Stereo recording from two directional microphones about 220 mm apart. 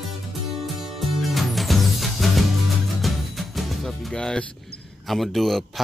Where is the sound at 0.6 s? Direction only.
Centre (ahead or behind).